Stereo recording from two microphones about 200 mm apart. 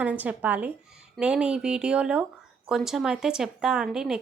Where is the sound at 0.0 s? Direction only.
5° right (ahead or behind).